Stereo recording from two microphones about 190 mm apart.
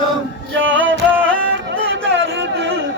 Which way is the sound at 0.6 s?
80° right.